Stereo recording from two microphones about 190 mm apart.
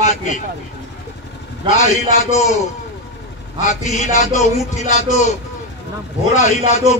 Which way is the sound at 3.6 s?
40° left (ahead or behind).